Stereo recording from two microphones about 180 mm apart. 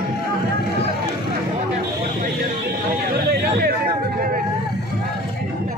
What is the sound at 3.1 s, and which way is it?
Vehicle, 55° right (ahead or behind).